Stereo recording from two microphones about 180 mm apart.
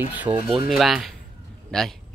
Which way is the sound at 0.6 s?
Centre (ahead or behind).